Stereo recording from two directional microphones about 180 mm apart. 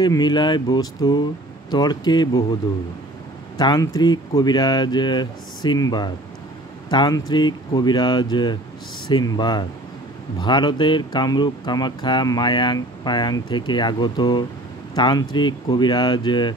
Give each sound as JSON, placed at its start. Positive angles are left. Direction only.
{"t": 0.0, "sound": "speech", "side_deg": 25}
{"t": 3.5, "sound": "speech", "side_deg": 20}